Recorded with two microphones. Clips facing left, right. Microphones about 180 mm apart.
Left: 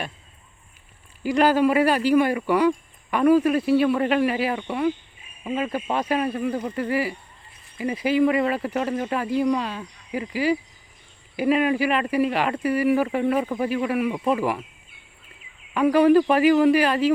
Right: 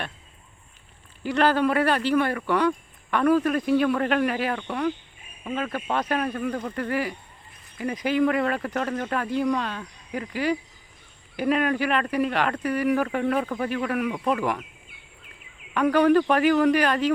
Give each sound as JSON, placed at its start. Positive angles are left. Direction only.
{"t": 1.2, "sound": "speech", "side_deg": 10}
{"t": 15.7, "sound": "speech", "side_deg": 5}